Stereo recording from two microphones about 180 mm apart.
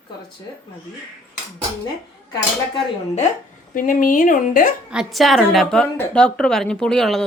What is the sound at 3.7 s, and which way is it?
Speech, 50° left (ahead or behind).